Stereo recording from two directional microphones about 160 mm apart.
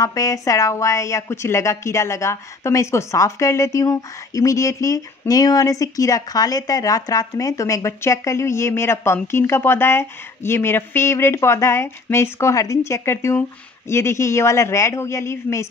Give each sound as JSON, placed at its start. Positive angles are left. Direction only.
{"t": 0.0, "sound": "a woman's voice", "side_deg": 20}